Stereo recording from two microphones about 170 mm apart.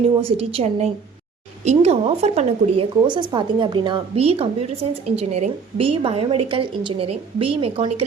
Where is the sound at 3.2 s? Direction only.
25° right (ahead or behind).